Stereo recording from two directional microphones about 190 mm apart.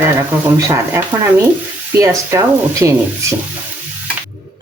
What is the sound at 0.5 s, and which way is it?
Speech, 15° right (ahead or behind).